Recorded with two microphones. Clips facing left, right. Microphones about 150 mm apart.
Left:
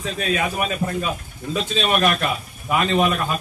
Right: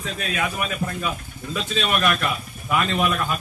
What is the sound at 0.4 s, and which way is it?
Speech, 30° left (ahead or behind).